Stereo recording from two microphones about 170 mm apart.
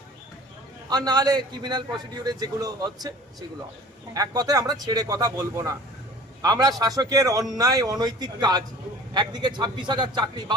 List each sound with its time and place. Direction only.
0.9 s a man's voice: 25° right (ahead or behind)
4.1 s a man's voice: 20° right (ahead or behind)